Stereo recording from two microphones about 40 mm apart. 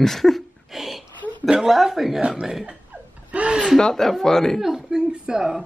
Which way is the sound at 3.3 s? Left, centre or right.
Right.